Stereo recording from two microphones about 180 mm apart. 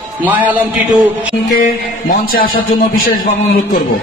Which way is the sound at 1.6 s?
50° left (ahead or behind).